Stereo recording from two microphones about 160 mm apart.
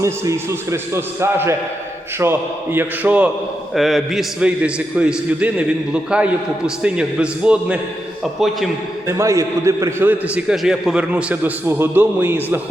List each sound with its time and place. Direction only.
0.0 s a man's voice: 20° right (ahead or behind); by 8.7 s centre (ahead or behind)
9.0 s a man's voice: 20° right (ahead or behind)